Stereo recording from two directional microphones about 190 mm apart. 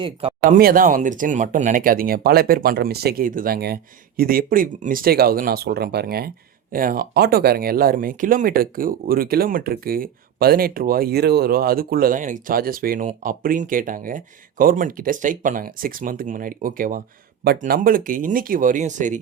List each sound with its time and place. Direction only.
0.0 s speech: 25° right (ahead or behind)
0.5 s speech: 50° right (ahead or behind)